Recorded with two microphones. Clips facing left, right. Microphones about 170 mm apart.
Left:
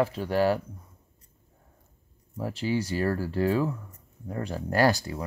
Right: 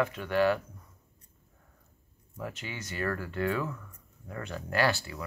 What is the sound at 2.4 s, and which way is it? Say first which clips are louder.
Speech: left 11 dB; 35° left (ahead or behind).